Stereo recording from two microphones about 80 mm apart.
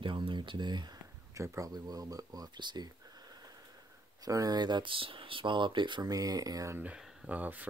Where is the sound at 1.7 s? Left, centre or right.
Right.